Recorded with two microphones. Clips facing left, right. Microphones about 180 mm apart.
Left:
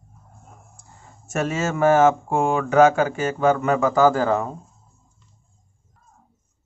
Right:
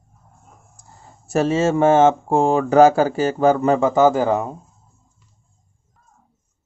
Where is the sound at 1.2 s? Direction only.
30° right (ahead or behind); by 4.5 s 15° right (ahead or behind).